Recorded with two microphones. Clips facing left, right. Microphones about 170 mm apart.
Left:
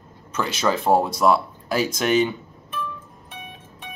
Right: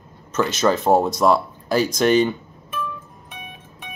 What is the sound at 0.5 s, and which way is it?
Speech, 45° right (ahead or behind).